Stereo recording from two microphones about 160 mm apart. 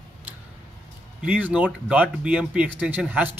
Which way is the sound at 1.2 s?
10° right (ahead or behind).